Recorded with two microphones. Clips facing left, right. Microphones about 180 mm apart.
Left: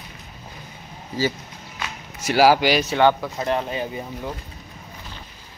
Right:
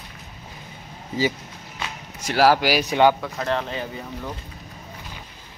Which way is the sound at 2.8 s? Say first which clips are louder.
Even; 15° right (ahead or behind).